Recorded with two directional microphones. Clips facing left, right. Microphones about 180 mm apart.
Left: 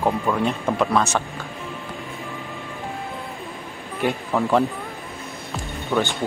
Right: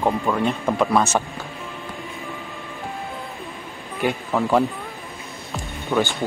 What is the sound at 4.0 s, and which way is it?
Speech, centre (ahead or behind).